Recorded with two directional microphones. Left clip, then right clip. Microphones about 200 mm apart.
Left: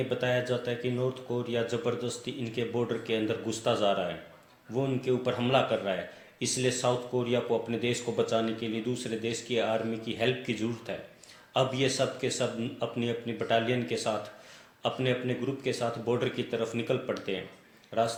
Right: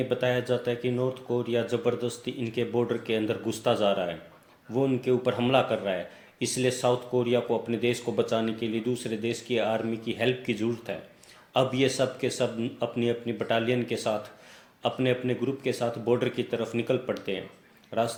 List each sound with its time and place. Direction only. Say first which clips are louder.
0.1 s speech: right 3 dB; 45° right (ahead or behind)